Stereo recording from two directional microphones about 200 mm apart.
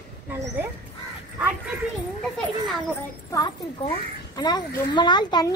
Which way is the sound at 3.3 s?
25° left (ahead or behind).